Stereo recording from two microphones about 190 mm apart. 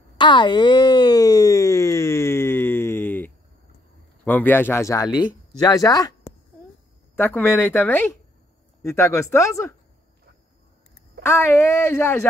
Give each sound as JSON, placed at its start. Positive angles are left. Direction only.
{"t": 0.2, "sound": "a sound", "side_deg": 25}
{"t": 4.2, "sound": "speech", "side_deg": 10}
{"t": 11.2, "sound": "speech", "side_deg": 15}